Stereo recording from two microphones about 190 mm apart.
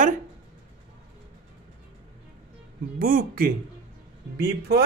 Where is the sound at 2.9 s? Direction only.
45° right (ahead or behind).